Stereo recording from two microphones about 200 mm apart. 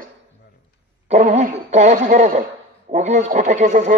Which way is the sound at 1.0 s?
35° right (ahead or behind).